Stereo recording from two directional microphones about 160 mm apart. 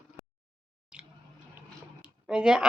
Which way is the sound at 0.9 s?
5° right (ahead or behind).